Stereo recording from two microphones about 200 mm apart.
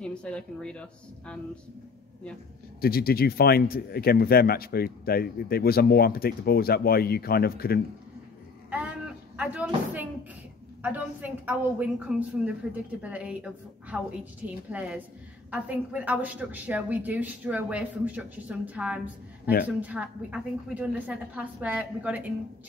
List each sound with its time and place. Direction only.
0.0 s speech: 5° left (ahead or behind)
2.8 s speech: 50° left (ahead or behind)
8.6 s a sound: 5° right (ahead or behind)
10.8 s a woman's voice: 10° right (ahead or behind)